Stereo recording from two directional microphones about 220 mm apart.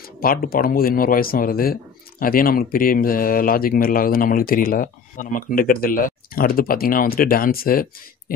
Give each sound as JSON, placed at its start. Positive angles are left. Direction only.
{"t": 0.2, "sound": "speech", "side_deg": 40}